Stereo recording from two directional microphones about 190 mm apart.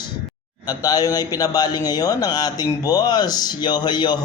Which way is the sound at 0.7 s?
20° left (ahead or behind).